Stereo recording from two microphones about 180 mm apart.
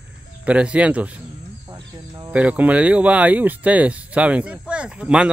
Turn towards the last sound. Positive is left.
turn(degrees=-5)  # may be behind; listen again after turning